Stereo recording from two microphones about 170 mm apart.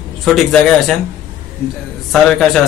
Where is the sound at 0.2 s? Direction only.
Centre (ahead or behind).